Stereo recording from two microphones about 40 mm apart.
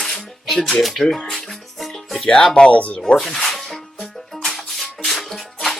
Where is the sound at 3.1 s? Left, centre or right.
Centre.